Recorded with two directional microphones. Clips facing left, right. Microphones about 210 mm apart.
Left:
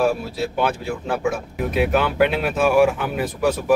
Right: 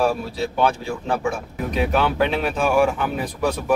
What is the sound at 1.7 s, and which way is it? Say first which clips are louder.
Speech: left 1 dB; 5° left (ahead or behind).